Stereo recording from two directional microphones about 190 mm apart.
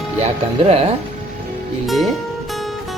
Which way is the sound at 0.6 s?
30° right (ahead or behind).